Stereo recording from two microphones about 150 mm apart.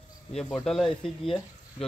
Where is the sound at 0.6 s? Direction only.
5° left (ahead or behind).